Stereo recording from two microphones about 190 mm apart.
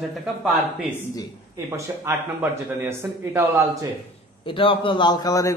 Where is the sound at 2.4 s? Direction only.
10° right (ahead or behind).